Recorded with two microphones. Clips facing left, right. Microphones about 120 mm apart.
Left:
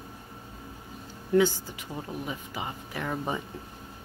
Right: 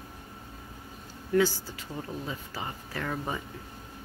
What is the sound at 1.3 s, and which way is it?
Speech, 20° left (ahead or behind).